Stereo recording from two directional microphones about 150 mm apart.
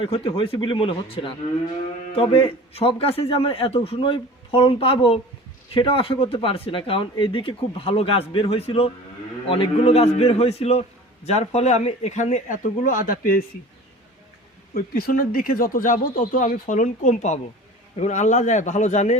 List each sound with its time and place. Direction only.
0.0 s speech: 35° left (ahead or behind); by 13.1 s 65° left (ahead or behind)
14.7 s speech: 85° left; by 19.1 s 50° left (ahead or behind)